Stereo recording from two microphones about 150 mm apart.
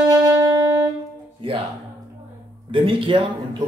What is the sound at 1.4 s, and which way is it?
Music, 35° right (ahead or behind).